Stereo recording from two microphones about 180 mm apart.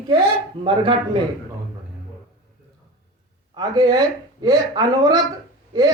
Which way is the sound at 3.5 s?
20° right (ahead or behind).